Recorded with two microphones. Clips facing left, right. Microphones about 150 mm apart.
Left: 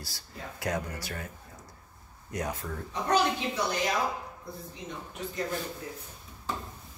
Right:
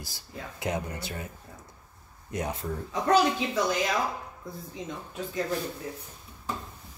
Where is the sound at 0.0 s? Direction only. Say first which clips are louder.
Right 2 dB; 20° right (ahead or behind).